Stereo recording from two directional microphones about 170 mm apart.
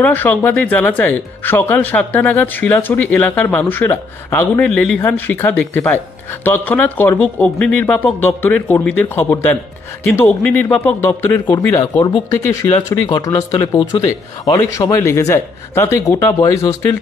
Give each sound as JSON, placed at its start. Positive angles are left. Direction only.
{"t": 0.0, "sound": "speech", "side_deg": 10}